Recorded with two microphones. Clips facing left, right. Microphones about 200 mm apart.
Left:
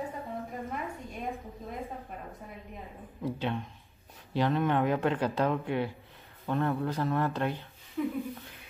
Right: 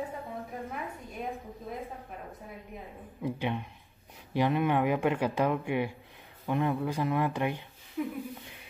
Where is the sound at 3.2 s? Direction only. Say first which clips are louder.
Even; 10° right (ahead or behind).